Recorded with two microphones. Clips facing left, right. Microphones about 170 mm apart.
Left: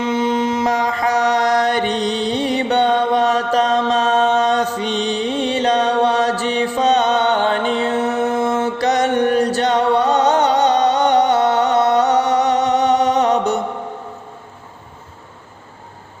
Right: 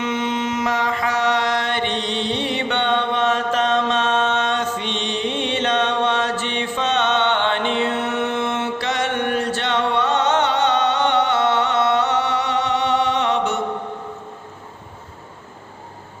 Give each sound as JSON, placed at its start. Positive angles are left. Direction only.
{"t": 0.0, "sound": "mantra", "side_deg": 35}